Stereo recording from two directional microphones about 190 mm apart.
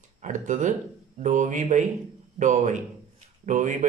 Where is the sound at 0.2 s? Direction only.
40° right (ahead or behind).